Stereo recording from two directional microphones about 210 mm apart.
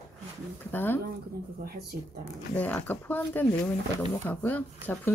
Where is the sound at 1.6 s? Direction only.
45° right (ahead or behind).